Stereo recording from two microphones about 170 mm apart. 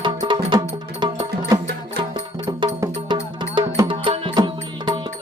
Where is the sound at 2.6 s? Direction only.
25° right (ahead or behind).